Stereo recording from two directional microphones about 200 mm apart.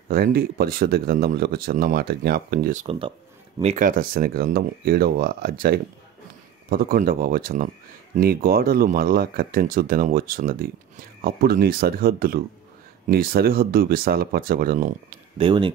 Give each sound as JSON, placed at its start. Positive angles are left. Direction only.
{"t": 0.1, "sound": "speech", "side_deg": -50}
{"t": 3.7, "sound": "speech", "side_deg": -40}
{"t": 15.3, "sound": "speech", "side_deg": -25}